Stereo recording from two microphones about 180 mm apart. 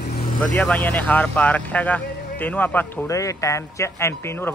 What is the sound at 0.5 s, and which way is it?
A man's voice, 5° left (ahead or behind).